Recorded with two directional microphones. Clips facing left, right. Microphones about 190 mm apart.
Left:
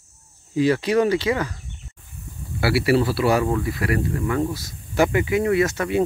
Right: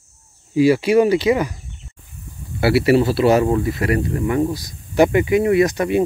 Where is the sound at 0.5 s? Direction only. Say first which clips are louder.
Right 5 dB; 10° right (ahead or behind).